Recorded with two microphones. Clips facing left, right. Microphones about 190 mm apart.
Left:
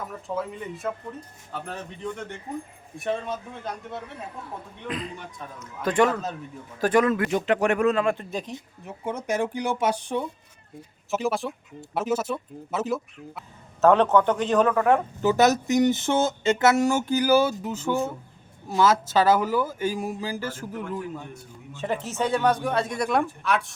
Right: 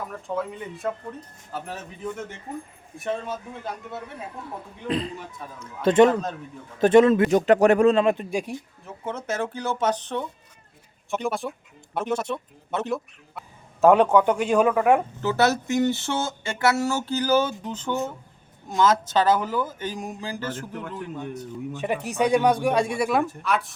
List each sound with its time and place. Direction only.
0.3 s speech: centre (ahead or behind)
5.5 s speech: 25° right (ahead or behind)
7.3 s speech: 40° right (ahead or behind); by 8.5 s 10° right (ahead or behind)
8.8 s speech: 15° left (ahead or behind)
13.8 s speech: 10° right (ahead or behind)
15.2 s speech: 15° left (ahead or behind)
21.7 s speech: 15° right (ahead or behind); by 23.7 s centre (ahead or behind)